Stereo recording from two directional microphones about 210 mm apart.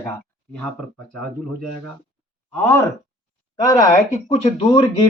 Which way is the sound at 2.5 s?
10° left (ahead or behind).